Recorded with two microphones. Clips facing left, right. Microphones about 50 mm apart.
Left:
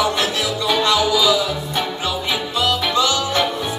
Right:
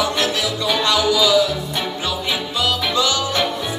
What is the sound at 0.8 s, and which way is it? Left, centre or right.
Music, centre.